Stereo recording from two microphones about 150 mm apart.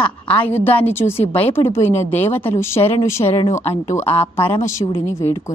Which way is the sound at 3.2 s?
40° left (ahead or behind).